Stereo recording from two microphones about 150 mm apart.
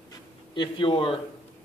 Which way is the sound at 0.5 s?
35° left (ahead or behind).